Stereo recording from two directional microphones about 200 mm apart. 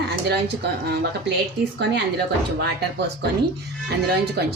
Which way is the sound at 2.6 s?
55° right (ahead or behind).